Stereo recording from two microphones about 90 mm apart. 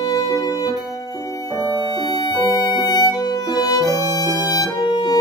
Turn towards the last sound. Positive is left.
turn(degrees=55)  # may be behind; listen again after turning